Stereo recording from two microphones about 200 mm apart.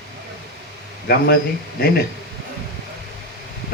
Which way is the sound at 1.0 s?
50° left (ahead or behind).